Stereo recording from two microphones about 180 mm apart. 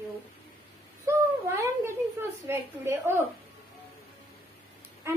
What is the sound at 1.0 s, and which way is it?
Speech, 15° right (ahead or behind).